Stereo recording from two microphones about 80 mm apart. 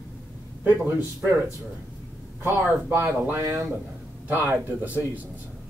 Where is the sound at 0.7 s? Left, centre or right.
Right.